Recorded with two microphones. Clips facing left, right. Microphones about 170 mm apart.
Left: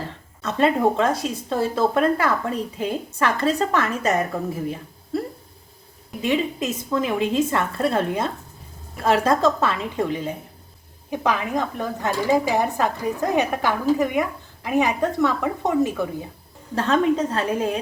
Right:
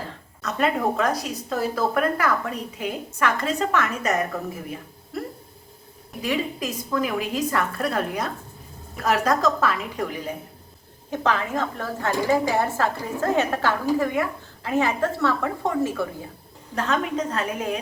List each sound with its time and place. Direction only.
0.4 s speech: 25° left (ahead or behind)
5.1 s a sound: 30° left (ahead or behind)
6.2 s speech: 25° left (ahead or behind)
11.1 s speech: 10° left (ahead or behind)
16.7 s speech: 30° left (ahead or behind)